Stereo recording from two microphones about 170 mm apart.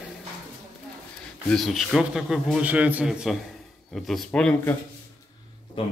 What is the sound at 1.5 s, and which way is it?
Speech, centre (ahead or behind).